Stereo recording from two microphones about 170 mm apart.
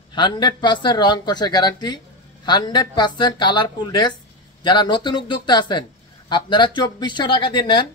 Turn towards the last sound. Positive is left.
turn(degrees=25)  # may be behind; listen again after turning